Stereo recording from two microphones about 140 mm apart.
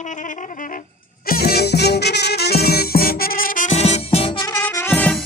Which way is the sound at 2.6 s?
90° left.